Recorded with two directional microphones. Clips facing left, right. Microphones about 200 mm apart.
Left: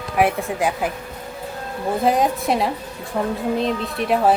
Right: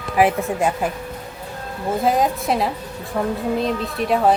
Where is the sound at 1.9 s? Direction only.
Centre (ahead or behind).